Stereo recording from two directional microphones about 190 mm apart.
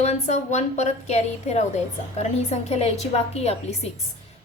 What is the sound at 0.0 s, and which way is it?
A woman's voice, 40° left (ahead or behind).